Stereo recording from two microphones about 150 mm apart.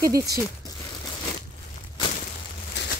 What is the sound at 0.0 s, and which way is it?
Speech, 20° right (ahead or behind).